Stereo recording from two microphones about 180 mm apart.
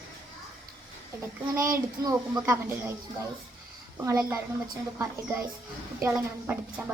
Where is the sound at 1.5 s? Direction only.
15° right (ahead or behind).